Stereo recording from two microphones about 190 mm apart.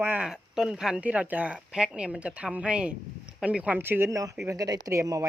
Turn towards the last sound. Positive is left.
turn(degrees=-15)  # may be behind; listen again after turning